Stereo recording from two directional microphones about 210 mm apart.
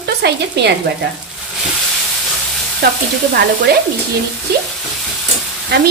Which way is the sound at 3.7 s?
50° right (ahead or behind).